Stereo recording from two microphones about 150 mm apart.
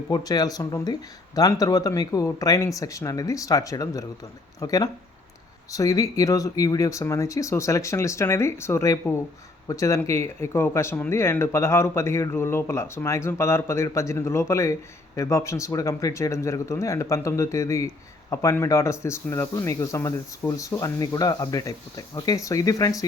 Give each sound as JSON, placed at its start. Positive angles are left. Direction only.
{"t": 0.1, "sound": "speech", "side_deg": 25}